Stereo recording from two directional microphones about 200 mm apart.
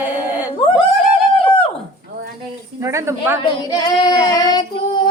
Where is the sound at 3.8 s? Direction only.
15° left (ahead or behind).